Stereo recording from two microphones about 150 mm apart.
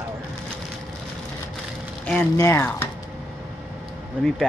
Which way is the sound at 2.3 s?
20° left (ahead or behind).